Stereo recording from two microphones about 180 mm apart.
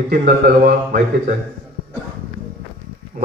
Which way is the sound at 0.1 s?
55° right (ahead or behind).